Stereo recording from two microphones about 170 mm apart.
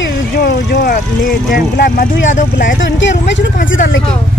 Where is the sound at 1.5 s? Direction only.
55° left (ahead or behind).